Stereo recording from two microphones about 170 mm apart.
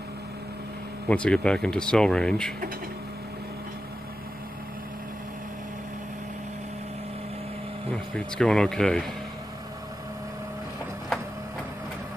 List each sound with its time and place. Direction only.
1.0 s speech: 5° left (ahead or behind)
7.9 s speech: 5° left (ahead or behind)